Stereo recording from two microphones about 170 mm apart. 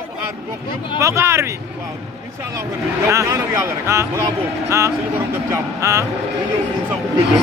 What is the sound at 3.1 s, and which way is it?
Speech, 15° right (ahead or behind).